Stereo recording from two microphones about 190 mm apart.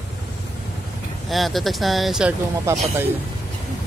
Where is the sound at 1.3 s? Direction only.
Centre (ahead or behind).